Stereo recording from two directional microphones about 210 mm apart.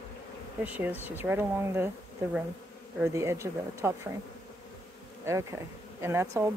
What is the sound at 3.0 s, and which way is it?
Speech, 10° right (ahead or behind).